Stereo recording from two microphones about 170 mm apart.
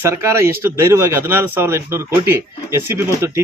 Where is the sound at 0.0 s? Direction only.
15° right (ahead or behind).